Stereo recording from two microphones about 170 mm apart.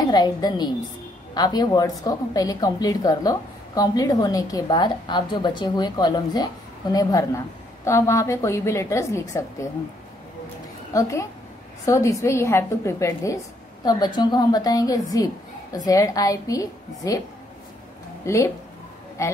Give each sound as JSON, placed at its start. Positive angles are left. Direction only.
{"t": 0.1, "sound": "a woman's voice", "side_deg": 25}
{"t": 10.9, "sound": "a woman's voice", "side_deg": 20}
{"t": 18.2, "sound": "speech", "side_deg": 15}